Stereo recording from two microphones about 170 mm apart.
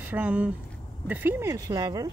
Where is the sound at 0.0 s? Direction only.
10° right (ahead or behind).